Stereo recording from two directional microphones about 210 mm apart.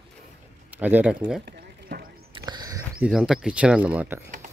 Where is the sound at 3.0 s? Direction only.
Centre (ahead or behind).